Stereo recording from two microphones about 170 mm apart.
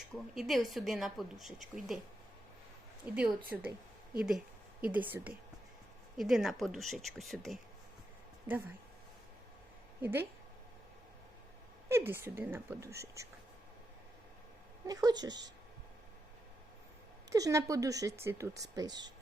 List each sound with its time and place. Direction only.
0.3 s a woman's voice: centre (ahead or behind)
3.0 s a woman's voice: 10° right (ahead or behind)
8.4 s a woman's voice: 10° right (ahead or behind)
10.0 s a woman's voice: 10° right (ahead or behind)
11.9 s a woman's voice: 15° right (ahead or behind)
14.8 s speech: 20° right (ahead or behind)
17.3 s speech: 20° right (ahead or behind)